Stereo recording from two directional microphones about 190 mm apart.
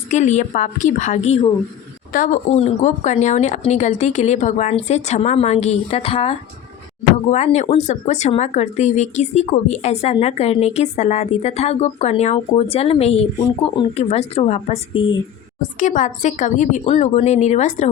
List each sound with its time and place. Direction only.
0.1 s speech: 35° left (ahead or behind)